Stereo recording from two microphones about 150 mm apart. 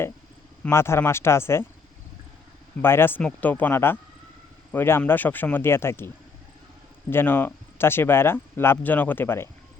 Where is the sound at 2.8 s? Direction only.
15° left (ahead or behind).